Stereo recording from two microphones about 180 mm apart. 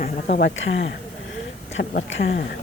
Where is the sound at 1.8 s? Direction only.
70° left (ahead or behind).